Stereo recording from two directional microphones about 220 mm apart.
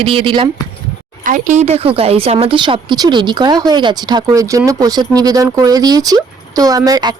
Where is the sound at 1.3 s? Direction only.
35° right (ahead or behind).